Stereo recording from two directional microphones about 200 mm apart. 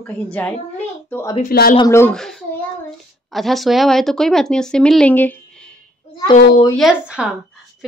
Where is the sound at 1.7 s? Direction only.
15° left (ahead or behind).